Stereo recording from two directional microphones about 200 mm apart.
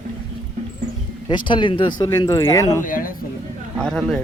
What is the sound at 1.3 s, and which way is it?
Speech, 25° left (ahead or behind).